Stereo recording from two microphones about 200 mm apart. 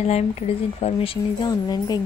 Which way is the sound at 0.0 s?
30° left (ahead or behind).